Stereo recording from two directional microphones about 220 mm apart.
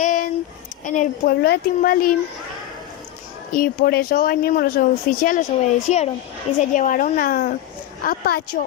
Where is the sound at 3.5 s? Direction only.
40° left (ahead or behind).